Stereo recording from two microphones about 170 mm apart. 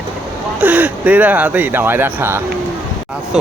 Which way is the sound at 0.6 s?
10° right (ahead or behind).